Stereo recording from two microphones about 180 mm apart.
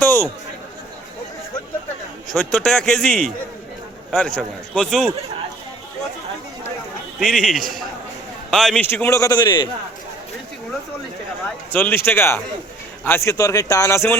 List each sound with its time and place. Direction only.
0.0 s chatter: 10° left (ahead or behind)
2.3 s a man's voice: 5° left (ahead or behind)
7.2 s a man's voice: 5° right (ahead or behind); by 9.6 s 25° left (ahead or behind)
11.7 s a man's voice: 10° left (ahead or behind)